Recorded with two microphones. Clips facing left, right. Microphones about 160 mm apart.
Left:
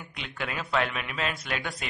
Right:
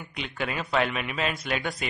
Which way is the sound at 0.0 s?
Centre (ahead or behind).